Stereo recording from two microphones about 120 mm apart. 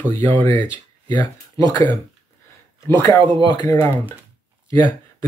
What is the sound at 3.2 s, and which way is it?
Speech, 45° right (ahead or behind).